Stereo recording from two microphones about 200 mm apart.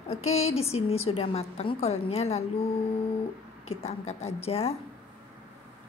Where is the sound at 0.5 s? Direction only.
30° left (ahead or behind).